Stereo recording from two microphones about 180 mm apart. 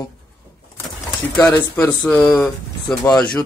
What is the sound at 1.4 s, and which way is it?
Speech, 10° left (ahead or behind).